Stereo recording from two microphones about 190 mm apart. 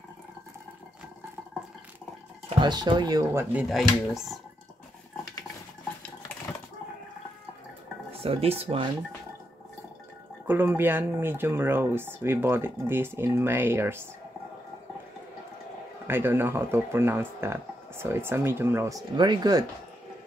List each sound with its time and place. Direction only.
2.6 s speech: 25° right (ahead or behind)
3.5 s speech: centre (ahead or behind)
8.1 s speech: 30° right (ahead or behind)
10.4 s speech: 10° right (ahead or behind)
16.1 s speech: 10° right (ahead or behind)